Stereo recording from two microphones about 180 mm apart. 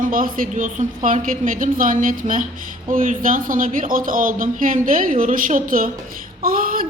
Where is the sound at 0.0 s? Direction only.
50° right (ahead or behind).